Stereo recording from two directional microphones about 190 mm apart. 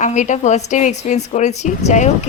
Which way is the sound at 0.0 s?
40° left (ahead or behind).